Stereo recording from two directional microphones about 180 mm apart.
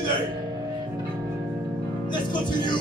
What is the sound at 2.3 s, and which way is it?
Speech, 25° left (ahead or behind).